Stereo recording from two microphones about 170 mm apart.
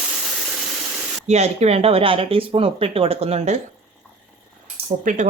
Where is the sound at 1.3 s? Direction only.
40° right (ahead or behind).